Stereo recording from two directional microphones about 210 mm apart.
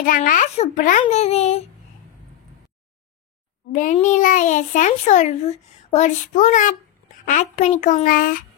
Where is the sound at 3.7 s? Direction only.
40° left (ahead or behind).